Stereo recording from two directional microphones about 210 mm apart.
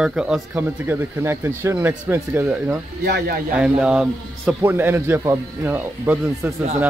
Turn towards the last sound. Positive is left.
turn(degrees=-10)  # may be behind; listen again after turning